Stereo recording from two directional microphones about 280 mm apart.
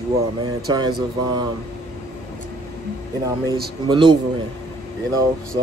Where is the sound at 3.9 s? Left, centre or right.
Centre.